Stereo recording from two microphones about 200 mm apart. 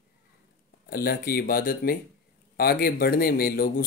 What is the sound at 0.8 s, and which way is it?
Speech, 50° left (ahead or behind).